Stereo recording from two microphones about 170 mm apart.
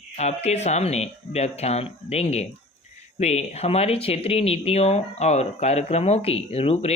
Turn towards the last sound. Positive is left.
turn(degrees=35)  # may be behind; listen again after turning